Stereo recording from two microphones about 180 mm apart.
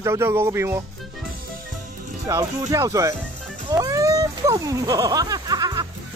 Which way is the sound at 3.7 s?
20° right (ahead or behind).